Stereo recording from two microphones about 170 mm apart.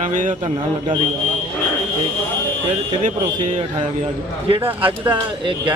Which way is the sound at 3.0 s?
45° right (ahead or behind).